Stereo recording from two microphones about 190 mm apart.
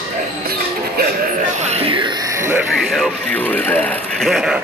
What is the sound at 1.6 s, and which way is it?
Music, 35° right (ahead or behind).